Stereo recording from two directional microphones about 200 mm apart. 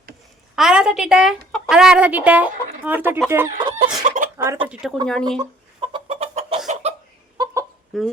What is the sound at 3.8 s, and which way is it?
Chicken, 40° right (ahead or behind).